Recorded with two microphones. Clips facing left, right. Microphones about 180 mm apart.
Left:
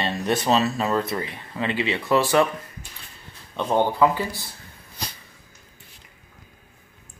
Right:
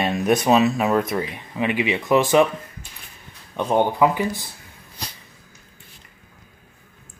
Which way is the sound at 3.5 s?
15° right (ahead or behind).